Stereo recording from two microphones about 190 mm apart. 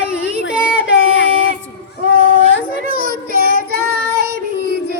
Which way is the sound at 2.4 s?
75° left (ahead or behind).